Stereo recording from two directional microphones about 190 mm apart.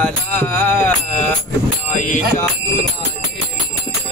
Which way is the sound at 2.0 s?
40° left (ahead or behind).